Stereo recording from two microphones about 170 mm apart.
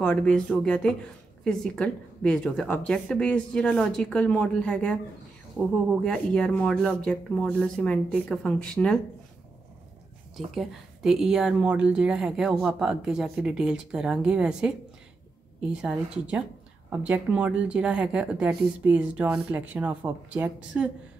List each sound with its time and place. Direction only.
0.0 s speech: 5° left (ahead or behind)
6.0 s speech: 5° left (ahead or behind)
10.3 s speech: centre (ahead or behind)
15.8 s a woman's voice: 5° right (ahead or behind)